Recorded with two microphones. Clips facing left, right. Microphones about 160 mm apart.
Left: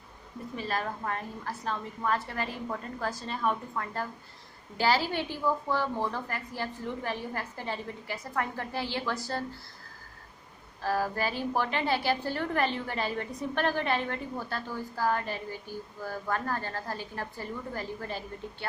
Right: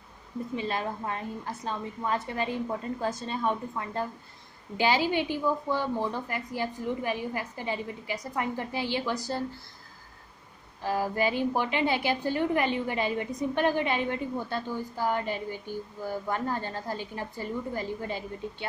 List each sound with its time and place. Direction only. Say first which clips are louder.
0.6 s a woman's voice: even; 20° right (ahead or behind)
10.8 s a woman's voice: right 2 dB; 15° right (ahead or behind)